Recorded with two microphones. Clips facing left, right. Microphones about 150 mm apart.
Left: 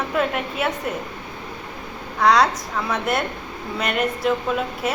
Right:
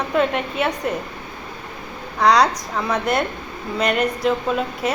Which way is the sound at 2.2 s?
Centre (ahead or behind).